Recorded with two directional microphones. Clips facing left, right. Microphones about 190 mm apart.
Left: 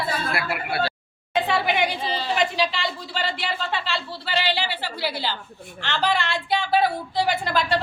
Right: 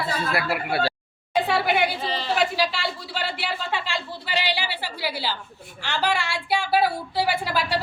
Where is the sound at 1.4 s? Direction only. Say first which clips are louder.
Right 1 dB; 10° right (ahead or behind).